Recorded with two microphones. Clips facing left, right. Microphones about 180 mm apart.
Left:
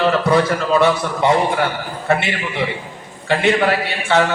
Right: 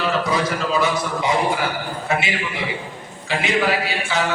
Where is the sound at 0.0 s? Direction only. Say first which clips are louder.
Left 6 dB; 60° left (ahead or behind).